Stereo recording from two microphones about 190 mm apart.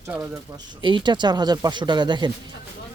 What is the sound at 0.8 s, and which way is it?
Speech, 25° right (ahead or behind).